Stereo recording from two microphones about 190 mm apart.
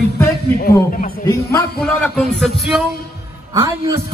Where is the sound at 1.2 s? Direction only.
20° left (ahead or behind).